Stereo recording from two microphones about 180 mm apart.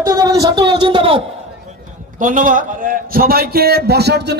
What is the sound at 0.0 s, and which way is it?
Speech, 20° right (ahead or behind).